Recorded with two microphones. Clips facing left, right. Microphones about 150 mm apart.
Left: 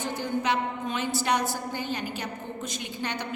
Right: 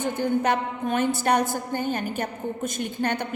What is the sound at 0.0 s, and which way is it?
A woman's voice, 50° right (ahead or behind).